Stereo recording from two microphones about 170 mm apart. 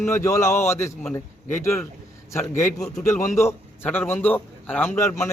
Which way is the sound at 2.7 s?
5° left (ahead or behind).